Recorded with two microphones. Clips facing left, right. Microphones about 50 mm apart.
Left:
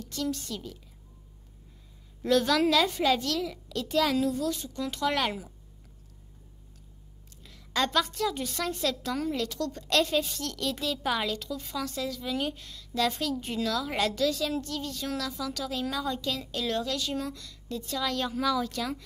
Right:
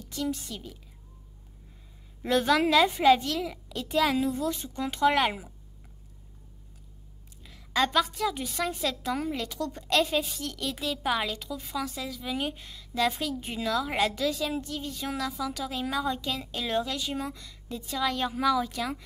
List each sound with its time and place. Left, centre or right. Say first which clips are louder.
0.0 s a woman's voice: even; centre
2.2 s a child's voice: even; right
7.4 s a woman's voice: right 2 dB; centre